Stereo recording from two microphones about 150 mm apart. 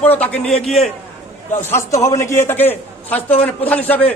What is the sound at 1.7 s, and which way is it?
A man's voice, 20° left (ahead or behind).